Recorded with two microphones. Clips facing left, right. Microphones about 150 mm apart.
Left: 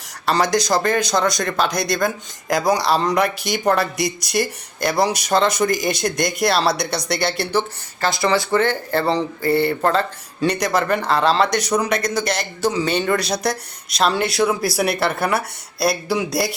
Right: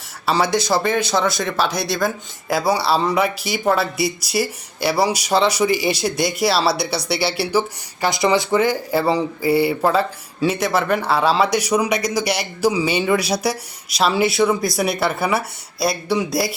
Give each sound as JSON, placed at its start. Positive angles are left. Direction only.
{"t": 0.3, "sound": "speech", "side_deg": -5}